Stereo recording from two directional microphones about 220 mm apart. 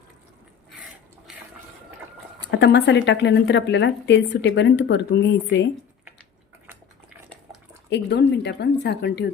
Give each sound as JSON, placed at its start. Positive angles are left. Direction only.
{"t": 2.5, "sound": "speech", "side_deg": 50}
{"t": 7.9, "sound": "speech", "side_deg": 50}